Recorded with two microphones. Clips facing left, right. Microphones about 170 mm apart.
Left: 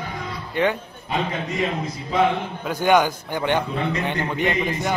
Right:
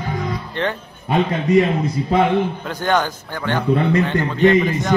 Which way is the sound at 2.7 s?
10° left (ahead or behind).